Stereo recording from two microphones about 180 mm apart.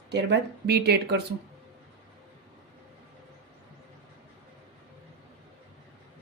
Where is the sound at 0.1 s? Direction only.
70° right (ahead or behind).